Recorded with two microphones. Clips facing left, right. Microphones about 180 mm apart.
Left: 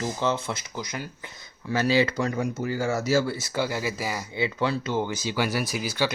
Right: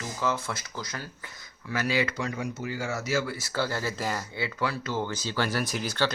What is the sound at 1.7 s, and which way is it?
Speech, 30° left (ahead or behind).